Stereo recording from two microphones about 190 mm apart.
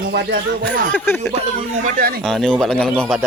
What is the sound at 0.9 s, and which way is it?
Speech, 10° left (ahead or behind).